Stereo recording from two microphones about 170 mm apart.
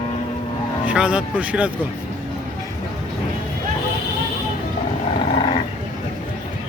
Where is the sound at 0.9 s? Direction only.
5° right (ahead or behind).